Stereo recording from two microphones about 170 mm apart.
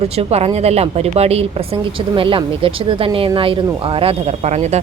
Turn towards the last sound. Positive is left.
turn(degrees=-40)  # may be behind; listen again after turning